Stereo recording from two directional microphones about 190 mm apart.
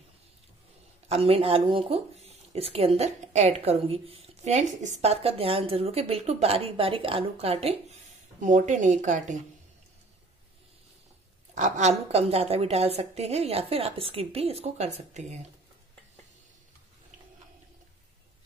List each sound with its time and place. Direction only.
1.0 s a woman's voice: 30° right (ahead or behind)
11.5 s a woman's voice: 40° right (ahead or behind)